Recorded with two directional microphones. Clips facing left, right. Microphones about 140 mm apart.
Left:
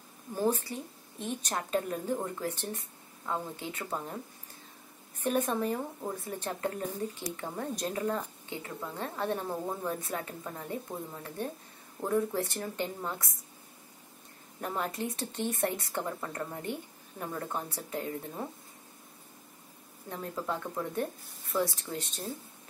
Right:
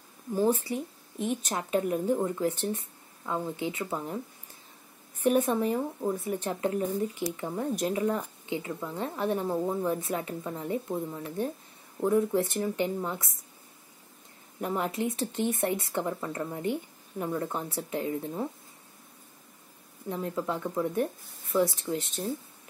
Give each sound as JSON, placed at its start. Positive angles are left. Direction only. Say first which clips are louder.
{"t": 0.4, "sound": "speech", "louder": "right 4 dB", "side_deg": -15}
{"t": 5.2, "sound": "a woman's voice", "louder": "right 5 dB", "side_deg": -15}
{"t": 14.6, "sound": "a woman's voice", "louder": "right 4 dB", "side_deg": -20}
{"t": 20.1, "sound": "a woman's voice", "louder": "right 4 dB", "side_deg": -20}